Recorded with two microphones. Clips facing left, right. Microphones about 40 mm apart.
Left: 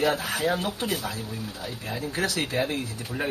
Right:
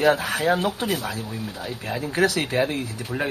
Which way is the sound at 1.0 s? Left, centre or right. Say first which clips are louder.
Right 3 dB; right.